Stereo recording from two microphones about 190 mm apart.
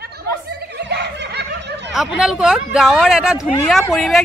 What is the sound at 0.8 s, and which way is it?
Snicker, 65° right (ahead or behind).